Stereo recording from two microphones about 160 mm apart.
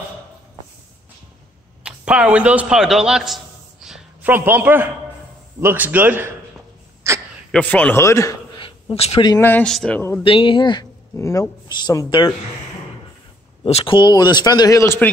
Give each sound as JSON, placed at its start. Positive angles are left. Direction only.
{"t": 1.8, "sound": "a man's voice", "side_deg": -5}
{"t": 3.8, "sound": "a sound", "side_deg": -5}
{"t": 5.6, "sound": "a man's voice", "side_deg": -15}
{"t": 7.5, "sound": "a man's voice", "side_deg": 10}
{"t": 8.5, "sound": "a sound", "side_deg": 30}
{"t": 9.4, "sound": "a man's voice", "side_deg": 10}
{"t": 10.2, "sound": "speech", "side_deg": 35}
{"t": 13.7, "sound": "speech", "side_deg": 35}